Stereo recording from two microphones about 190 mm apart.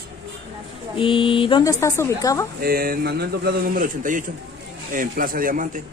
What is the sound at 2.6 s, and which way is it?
A man's voice, 50° right (ahead or behind).